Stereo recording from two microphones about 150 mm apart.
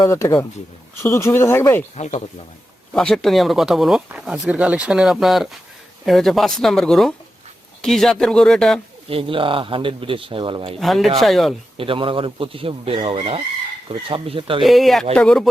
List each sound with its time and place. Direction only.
0.0 s speech: 20° left (ahead or behind)
2.0 s speech: 50° left (ahead or behind)
2.9 s speech: 5° left (ahead or behind)
9.0 s speech: 35° right (ahead or behind)
10.8 s speech: centre (ahead or behind)
11.8 s speech: 35° right (ahead or behind)
14.6 s speech: centre (ahead or behind)